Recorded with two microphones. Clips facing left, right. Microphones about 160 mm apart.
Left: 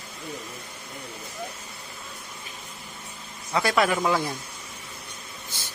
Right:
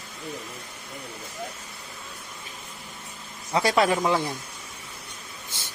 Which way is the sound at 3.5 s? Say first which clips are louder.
Right 1 dB; 30° right (ahead or behind).